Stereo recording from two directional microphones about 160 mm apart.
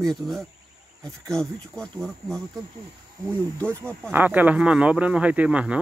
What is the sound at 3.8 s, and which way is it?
Speech, 10° left (ahead or behind).